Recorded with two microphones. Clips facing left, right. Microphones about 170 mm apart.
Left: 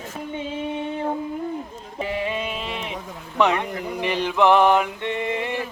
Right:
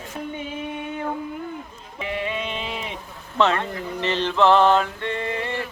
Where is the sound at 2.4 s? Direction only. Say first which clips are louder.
Left 1 dB; centre (ahead or behind).